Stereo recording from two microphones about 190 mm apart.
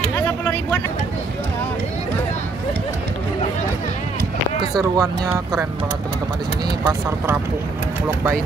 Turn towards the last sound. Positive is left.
turn(degrees=-20)  # may be behind; listen again after turning